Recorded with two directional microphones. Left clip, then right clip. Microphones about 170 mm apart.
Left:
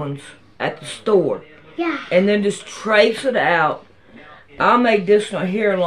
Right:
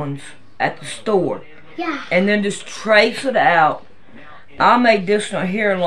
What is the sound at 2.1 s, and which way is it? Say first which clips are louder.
Speech: left 1 dB; 10° right (ahead or behind).